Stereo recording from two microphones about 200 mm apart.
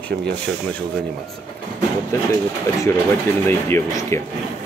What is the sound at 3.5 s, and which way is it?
Speech, 10° left (ahead or behind).